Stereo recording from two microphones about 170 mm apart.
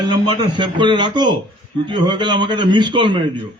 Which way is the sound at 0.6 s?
25° right (ahead or behind).